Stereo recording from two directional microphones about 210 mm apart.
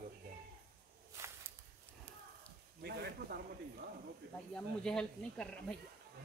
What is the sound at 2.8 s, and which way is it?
Speech, 50° right (ahead or behind).